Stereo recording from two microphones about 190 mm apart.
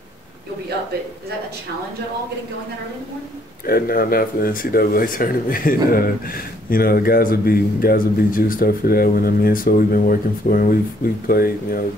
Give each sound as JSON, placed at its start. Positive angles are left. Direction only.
{"t": 3.6, "sound": "speech", "side_deg": 50}